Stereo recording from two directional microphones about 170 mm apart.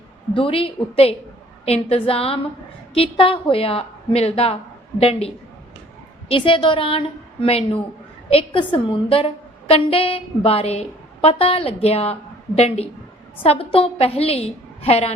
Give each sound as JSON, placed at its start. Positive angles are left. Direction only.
{"t": 0.3, "sound": "a woman's voice", "side_deg": 30}